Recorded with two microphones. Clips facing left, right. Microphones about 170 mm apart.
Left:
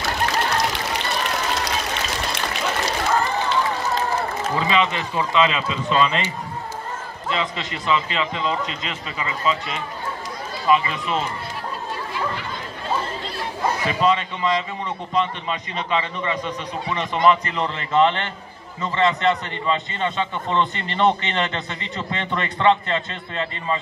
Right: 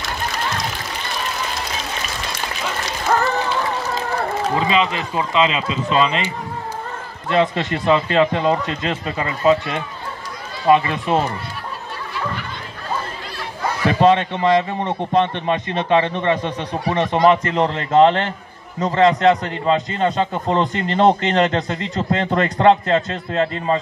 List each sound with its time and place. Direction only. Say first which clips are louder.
0.5 s a sound: left 3 dB; 70° left (ahead or behind)
4.6 s speech: right 2 dB; 25° right (ahead or behind)
7.2 s a man's voice: right 8 dB; 55° right (ahead or behind)
13.8 s a man's voice: right 8 dB; 60° right (ahead or behind); by 23.8 s 45° right (ahead or behind)